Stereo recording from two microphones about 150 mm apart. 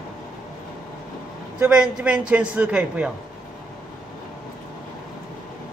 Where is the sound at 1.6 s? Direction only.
5° right (ahead or behind).